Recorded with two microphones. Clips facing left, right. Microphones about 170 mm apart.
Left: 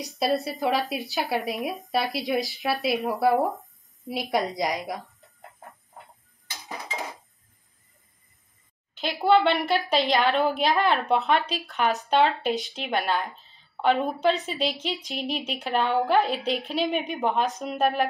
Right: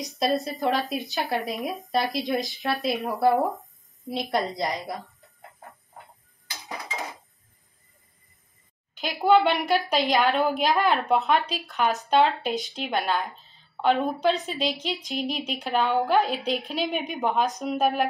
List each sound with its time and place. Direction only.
0.2 s a woman's voice: 5° left (ahead or behind)
4.4 s a woman's voice: 15° left (ahead or behind)
9.0 s speech: centre (ahead or behind)